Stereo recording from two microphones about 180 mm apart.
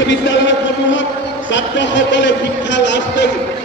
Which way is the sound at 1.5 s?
90° left.